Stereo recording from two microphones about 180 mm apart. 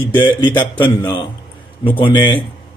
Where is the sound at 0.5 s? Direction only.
10° left (ahead or behind).